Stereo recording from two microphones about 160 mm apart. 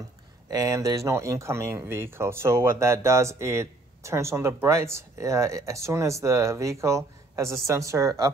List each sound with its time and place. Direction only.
0.5 s speech: 20° right (ahead or behind)